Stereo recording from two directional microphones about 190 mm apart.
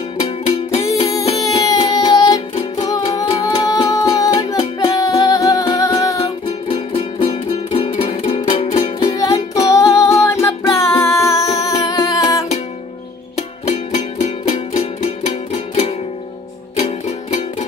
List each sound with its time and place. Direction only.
0.2 s music: 30° left (ahead or behind)
0.8 s music: 15° left (ahead or behind)
6.7 s music: 30° left (ahead or behind)
9.1 s music: 20° left (ahead or behind)
13.7 s music: 35° left (ahead or behind)
17.3 s music: 40° left (ahead or behind)